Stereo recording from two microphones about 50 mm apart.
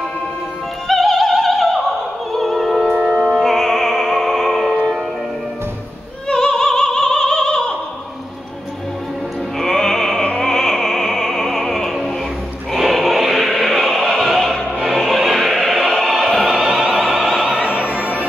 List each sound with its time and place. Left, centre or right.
0.8 s opera: centre
2.3 s music: centre
6.2 s opera: centre
9.6 s music: centre
12.9 s choir: centre
14.2 s music: centre
17.1 s opera: centre
17.4 s opera: right
17.7 s music: right